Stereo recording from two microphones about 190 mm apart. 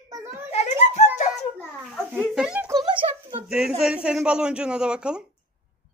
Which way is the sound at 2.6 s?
20° right (ahead or behind).